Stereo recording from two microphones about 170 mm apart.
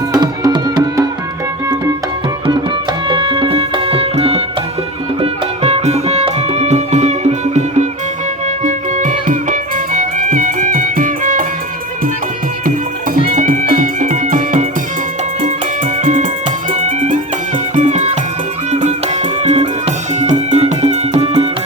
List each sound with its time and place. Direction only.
0.1 s music: 20° right (ahead or behind)
3.1 s music: 30° right (ahead or behind); by 11.4 s 50° right (ahead or behind)
13.1 s music: 50° right (ahead or behind)
16.0 s music: 50° right (ahead or behind)
17.7 s music: 45° right (ahead or behind)